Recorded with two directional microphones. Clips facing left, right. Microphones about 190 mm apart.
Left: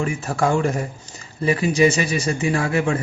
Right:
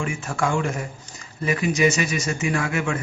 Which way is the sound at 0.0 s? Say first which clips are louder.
Left 4 dB; 35° left (ahead or behind).